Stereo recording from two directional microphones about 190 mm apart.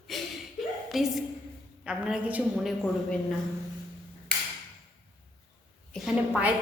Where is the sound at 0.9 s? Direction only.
Centre (ahead or behind).